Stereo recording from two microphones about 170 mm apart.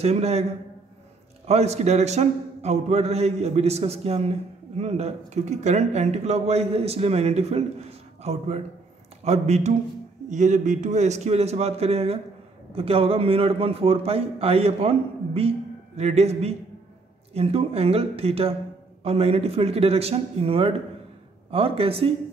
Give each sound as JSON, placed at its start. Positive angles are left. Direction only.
{"t": 0.0, "sound": "a man's voice", "side_deg": -40}
{"t": 1.5, "sound": "a man's voice", "side_deg": -40}